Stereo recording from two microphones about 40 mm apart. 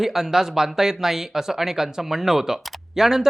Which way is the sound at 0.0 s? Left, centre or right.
Centre.